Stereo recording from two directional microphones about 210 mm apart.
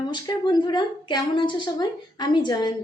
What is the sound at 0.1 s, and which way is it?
A woman's voice, 20° left (ahead or behind).